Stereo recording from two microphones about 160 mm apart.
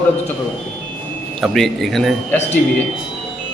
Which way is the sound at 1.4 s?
Centre (ahead or behind).